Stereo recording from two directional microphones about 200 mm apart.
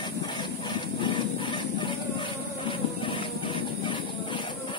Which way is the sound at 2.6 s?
25° left (ahead or behind).